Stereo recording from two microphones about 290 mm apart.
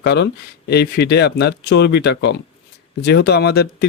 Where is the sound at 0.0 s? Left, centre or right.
Left.